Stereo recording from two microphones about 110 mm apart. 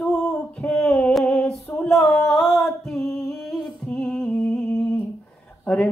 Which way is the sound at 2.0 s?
20° left (ahead or behind).